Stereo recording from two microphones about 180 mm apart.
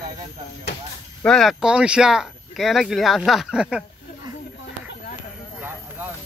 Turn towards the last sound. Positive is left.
turn(degrees=-10)  # may be behind; listen again after turning